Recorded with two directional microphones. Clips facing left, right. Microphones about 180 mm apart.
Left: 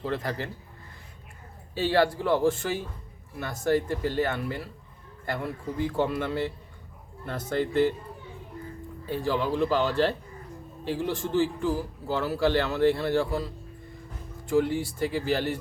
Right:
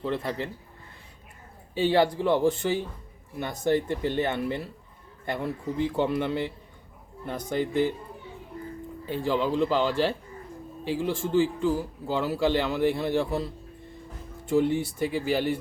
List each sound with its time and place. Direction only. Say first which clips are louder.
0.1 s a man's voice: right 2 dB; 25° right (ahead or behind)
1.7 s a man's voice: right 1 dB; 15° right (ahead or behind)
9.0 s speech: right 1 dB; 15° right (ahead or behind)